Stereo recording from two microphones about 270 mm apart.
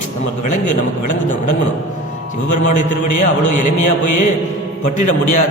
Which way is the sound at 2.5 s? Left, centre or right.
Left.